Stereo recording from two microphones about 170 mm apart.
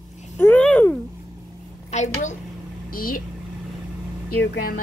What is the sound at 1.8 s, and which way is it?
Speech, 40° left (ahead or behind).